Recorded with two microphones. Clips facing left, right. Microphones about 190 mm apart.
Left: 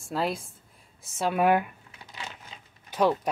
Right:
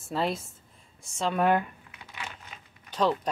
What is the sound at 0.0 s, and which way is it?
A woman's voice, centre (ahead or behind).